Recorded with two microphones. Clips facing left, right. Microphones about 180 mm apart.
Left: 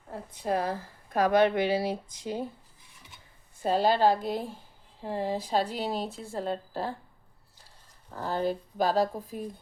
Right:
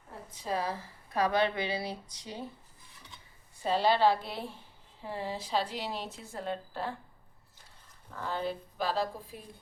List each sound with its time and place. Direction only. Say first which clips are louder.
0.1 s a woman's voice: left 5 dB; 60° left (ahead or behind)
3.6 s a woman's voice: left 2 dB; 45° left (ahead or behind)
8.1 s speech: left 5 dB; 40° left (ahead or behind)